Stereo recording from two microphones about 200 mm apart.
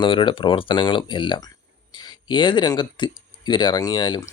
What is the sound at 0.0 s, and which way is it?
Speech, 25° left (ahead or behind).